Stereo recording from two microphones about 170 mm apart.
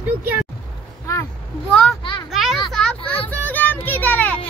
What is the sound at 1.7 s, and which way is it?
Speech, 5° left (ahead or behind).